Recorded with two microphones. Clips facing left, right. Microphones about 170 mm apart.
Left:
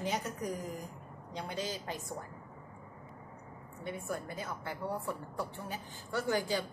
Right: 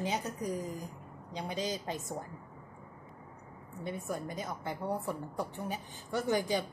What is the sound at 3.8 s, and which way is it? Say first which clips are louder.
A woman's voice: right 1 dB; 20° right (ahead or behind).